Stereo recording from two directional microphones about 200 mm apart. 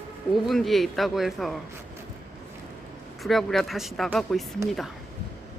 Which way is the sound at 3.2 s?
Centre (ahead or behind).